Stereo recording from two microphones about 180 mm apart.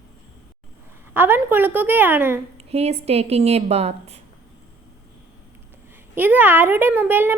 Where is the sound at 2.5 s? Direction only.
35° right (ahead or behind).